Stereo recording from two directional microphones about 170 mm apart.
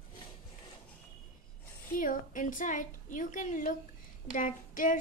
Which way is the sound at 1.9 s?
55° left (ahead or behind).